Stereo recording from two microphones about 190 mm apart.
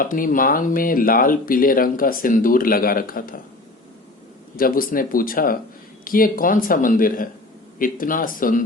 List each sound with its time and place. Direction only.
0.0 s speech: 45° left (ahead or behind)
4.5 s speech: 50° left (ahead or behind)